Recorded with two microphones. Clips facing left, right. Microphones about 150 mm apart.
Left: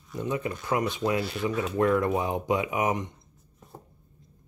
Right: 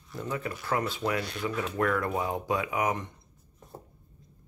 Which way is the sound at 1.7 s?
20° left (ahead or behind).